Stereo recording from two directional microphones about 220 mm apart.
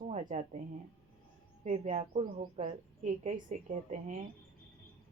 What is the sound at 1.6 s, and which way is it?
A woman's voice, 30° right (ahead or behind).